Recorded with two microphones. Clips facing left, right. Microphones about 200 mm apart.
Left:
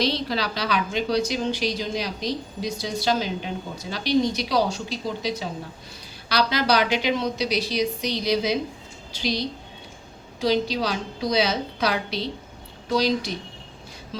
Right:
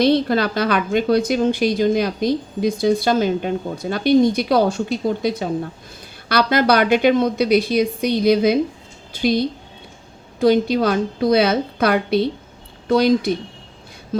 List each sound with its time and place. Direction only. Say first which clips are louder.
0.0 s a woman's voice: right 9 dB; 55° right (ahead or behind)